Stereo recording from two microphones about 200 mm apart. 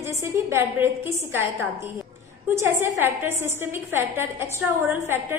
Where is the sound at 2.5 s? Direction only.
10° right (ahead or behind).